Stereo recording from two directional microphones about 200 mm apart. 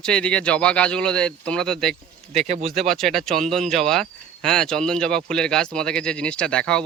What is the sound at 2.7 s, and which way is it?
Speech, centre (ahead or behind).